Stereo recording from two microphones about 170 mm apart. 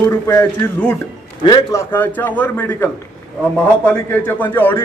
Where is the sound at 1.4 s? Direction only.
25° left (ahead or behind).